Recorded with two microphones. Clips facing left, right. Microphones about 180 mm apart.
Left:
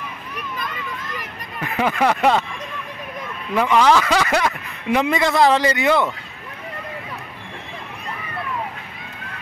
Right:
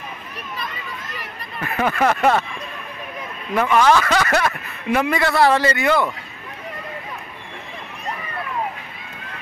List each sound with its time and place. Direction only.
1.6 s speech: 15° left (ahead or behind)
3.5 s speech: 15° left (ahead or behind)